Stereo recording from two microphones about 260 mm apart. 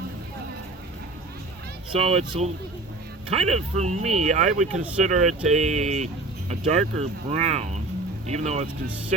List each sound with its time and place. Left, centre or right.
1.9 s speech: right